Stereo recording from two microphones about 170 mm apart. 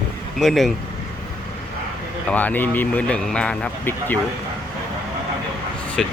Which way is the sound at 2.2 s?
10° left (ahead or behind).